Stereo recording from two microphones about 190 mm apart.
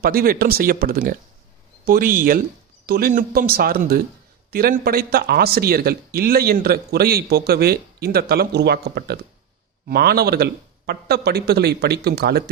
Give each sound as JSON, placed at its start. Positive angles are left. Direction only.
{"t": 0.0, "sound": "speech", "side_deg": -50}